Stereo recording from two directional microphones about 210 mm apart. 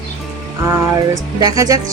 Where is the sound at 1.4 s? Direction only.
15° right (ahead or behind).